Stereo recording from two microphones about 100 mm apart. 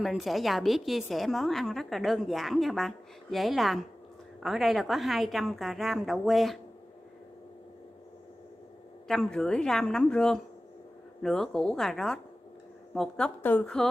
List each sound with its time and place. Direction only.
0.0 s a woman's voice: centre (ahead or behind)
9.0 s a woman's voice: 5° left (ahead or behind)
13.4 s a woman's voice: 20° left (ahead or behind)